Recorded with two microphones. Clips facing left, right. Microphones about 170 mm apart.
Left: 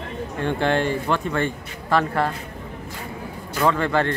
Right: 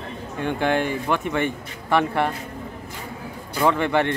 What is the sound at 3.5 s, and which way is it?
Speech, 15° right (ahead or behind).